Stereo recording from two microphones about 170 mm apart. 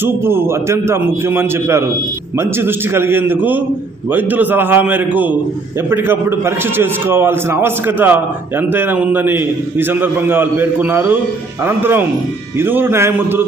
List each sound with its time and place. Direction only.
0.0 s a man's voice: 15° right (ahead or behind)